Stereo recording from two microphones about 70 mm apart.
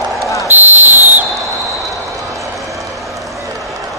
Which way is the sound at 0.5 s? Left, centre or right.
Right.